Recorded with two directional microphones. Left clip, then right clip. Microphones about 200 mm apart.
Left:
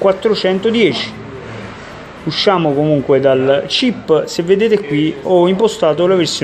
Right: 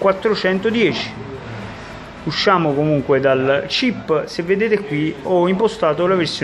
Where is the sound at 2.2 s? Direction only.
10° left (ahead or behind).